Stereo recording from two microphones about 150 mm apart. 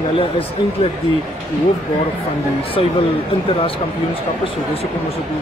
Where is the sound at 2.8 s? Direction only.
40° left (ahead or behind).